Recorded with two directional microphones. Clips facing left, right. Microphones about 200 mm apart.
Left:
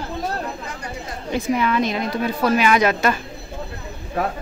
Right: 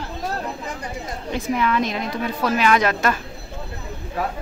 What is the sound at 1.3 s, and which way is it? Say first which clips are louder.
A woman's voice: left 2 dB; centre (ahead or behind).